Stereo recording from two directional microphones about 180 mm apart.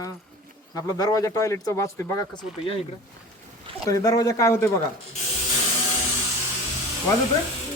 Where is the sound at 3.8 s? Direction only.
20° left (ahead or behind).